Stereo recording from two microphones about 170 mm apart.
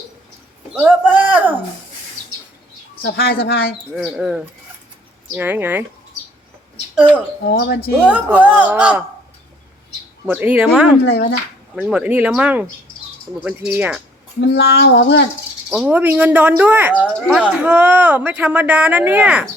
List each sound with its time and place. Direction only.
0.7 s a sound: 5° right (ahead or behind)
3.0 s child singing: 65° left (ahead or behind)
3.9 s speech: centre (ahead or behind)
7.4 s child singing: 70° left (ahead or behind)
8.0 s speech: 10° right (ahead or behind)
10.2 s speech: 10° right (ahead or behind)
11.0 s speech: 80° left
11.8 s speech: 5° right (ahead or behind)
14.4 s child singing: 70° left (ahead or behind); by 15.3 s 85° left
15.7 s speech: 5° right (ahead or behind)